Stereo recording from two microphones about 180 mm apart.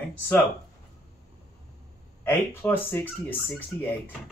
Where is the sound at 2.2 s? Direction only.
15° left (ahead or behind).